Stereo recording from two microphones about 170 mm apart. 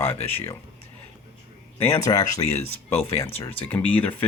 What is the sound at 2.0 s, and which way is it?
Speech, 20° left (ahead or behind).